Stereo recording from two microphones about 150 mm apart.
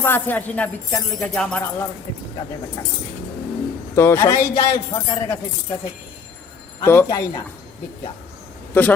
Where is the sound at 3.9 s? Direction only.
15° left (ahead or behind).